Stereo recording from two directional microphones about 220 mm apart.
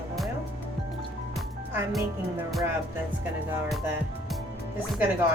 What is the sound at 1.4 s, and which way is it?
Music, centre (ahead or behind).